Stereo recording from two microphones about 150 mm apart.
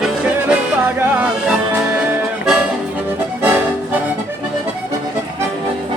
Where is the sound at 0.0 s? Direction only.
5° right (ahead or behind).